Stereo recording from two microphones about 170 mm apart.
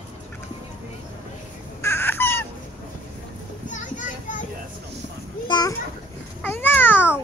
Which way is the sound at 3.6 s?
50° left (ahead or behind).